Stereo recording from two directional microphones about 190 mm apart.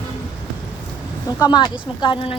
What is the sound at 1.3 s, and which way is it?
Speech, 20° left (ahead or behind).